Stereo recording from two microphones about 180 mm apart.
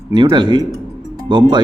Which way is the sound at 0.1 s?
25° right (ahead or behind).